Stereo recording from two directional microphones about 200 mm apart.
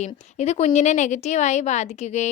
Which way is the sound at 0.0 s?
35° left (ahead or behind).